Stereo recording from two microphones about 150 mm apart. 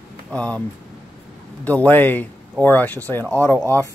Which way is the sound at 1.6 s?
10° left (ahead or behind).